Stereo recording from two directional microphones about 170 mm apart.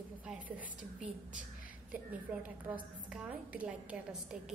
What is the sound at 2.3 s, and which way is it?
A woman's voice, 10° right (ahead or behind).